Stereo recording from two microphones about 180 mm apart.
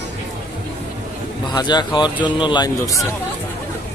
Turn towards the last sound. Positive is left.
turn(degrees=20)  # may be behind; listen again after turning